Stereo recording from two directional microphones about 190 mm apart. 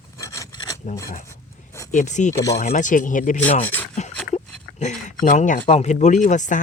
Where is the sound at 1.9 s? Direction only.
40° left (ahead or behind).